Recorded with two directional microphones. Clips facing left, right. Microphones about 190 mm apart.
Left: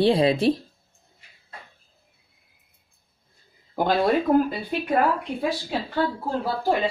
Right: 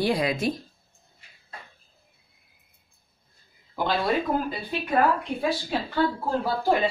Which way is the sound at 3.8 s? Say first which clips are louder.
Left 4 dB; 45° left (ahead or behind).